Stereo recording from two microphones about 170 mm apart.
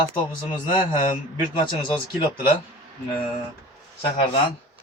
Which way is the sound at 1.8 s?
30° left (ahead or behind).